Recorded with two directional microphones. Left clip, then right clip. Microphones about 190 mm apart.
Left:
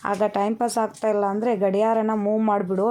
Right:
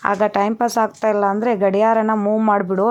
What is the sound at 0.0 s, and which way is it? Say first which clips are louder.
Speech: right 5 dB; 20° right (ahead or behind).